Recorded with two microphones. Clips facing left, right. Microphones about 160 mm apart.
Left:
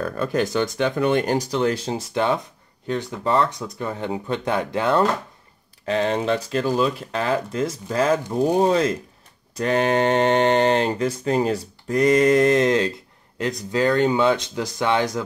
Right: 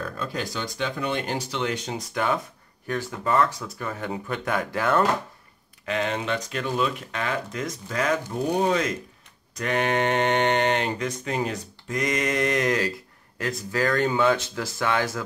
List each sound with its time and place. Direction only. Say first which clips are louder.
0.2 s speech: left 11 dB; 50° left (ahead or behind); by 15.2 s 20° left (ahead or behind)